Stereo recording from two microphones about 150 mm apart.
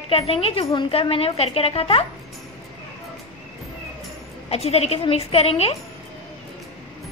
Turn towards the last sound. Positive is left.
turn(degrees=40)  # may be behind; listen again after turning